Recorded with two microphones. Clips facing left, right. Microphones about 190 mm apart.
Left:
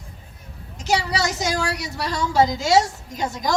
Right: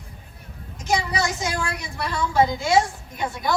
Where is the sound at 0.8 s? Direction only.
75° left (ahead or behind).